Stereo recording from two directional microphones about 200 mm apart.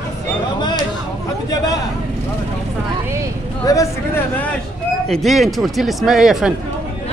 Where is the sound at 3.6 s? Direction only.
15° left (ahead or behind).